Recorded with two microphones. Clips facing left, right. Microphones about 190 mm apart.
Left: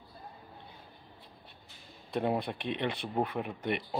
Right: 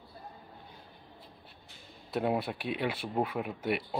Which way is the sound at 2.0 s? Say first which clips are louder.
Even; 5° right (ahead or behind).